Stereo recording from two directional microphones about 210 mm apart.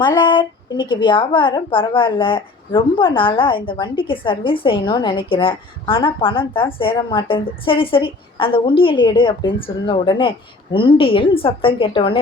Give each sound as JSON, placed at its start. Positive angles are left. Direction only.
{"t": 0.0, "sound": "a woman's voice", "side_deg": 20}